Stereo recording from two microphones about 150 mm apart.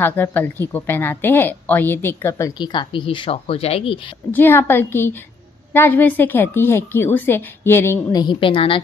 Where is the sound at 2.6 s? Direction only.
30° left (ahead or behind).